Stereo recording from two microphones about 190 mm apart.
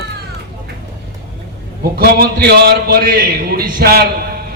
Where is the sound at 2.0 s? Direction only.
55° right (ahead or behind).